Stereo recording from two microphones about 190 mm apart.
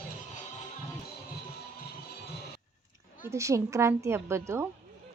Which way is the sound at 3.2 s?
15° right (ahead or behind).